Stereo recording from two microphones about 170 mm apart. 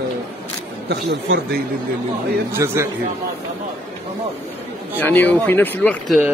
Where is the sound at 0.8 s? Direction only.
80° right.